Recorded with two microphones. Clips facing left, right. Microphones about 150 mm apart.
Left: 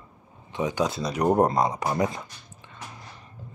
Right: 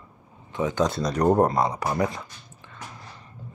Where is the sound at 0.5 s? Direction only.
15° left (ahead or behind).